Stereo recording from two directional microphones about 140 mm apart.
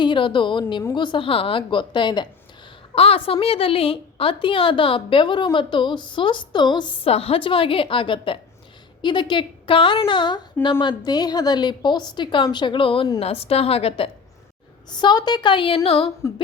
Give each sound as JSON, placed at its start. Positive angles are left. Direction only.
{"t": 0.0, "sound": "a woman's voice", "side_deg": 35}
{"t": 2.9, "sound": "a woman's voice", "side_deg": 45}
{"t": 14.8, "sound": "a woman's voice", "side_deg": 30}